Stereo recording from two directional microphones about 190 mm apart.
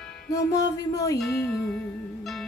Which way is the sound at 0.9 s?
15° left (ahead or behind).